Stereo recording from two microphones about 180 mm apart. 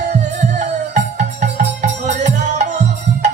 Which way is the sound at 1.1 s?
40° right (ahead or behind).